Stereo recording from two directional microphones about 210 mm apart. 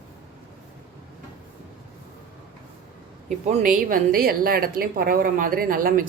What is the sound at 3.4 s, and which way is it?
A woman's voice, 35° right (ahead or behind).